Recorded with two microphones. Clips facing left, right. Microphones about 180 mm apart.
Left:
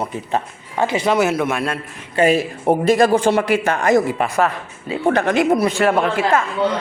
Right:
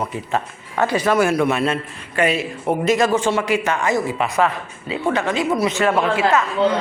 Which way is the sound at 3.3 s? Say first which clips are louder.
Left 3 dB; 50° left (ahead or behind).